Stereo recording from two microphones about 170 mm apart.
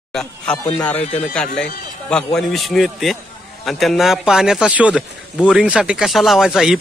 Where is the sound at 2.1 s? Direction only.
5° left (ahead or behind).